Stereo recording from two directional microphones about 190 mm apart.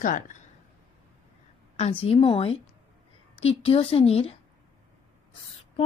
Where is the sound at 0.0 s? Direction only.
45° left (ahead or behind).